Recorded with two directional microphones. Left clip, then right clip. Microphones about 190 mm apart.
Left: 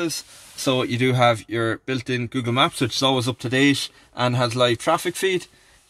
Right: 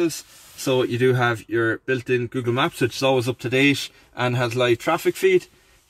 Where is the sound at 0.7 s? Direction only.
30° left (ahead or behind).